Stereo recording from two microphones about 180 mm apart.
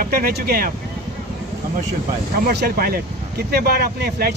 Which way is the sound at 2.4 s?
60° right (ahead or behind).